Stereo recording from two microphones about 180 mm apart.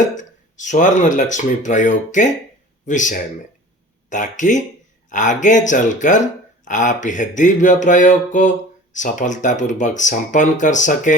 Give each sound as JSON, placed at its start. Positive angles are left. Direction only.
{"t": 0.1, "sound": "speech", "side_deg": 45}